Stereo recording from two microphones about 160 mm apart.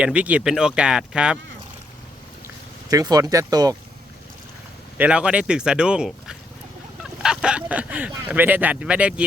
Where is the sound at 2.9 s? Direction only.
25° right (ahead or behind).